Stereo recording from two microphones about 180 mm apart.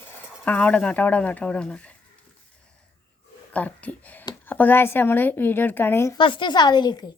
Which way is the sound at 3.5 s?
10° left (ahead or behind).